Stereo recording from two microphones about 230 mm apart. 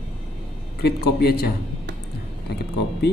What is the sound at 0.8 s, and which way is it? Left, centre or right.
Speech, left.